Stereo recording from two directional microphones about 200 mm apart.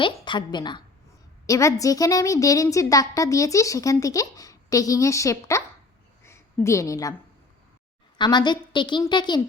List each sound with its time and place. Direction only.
0.0 s a woman's voice: 25° left (ahead or behind)
6.2 s a sound: 15° left (ahead or behind)
8.2 s a woman's voice: 20° left (ahead or behind)